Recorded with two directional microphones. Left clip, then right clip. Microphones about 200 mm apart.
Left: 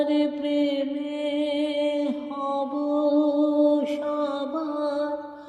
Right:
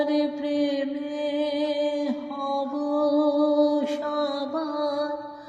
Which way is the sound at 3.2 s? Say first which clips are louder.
Even; 25° left (ahead or behind).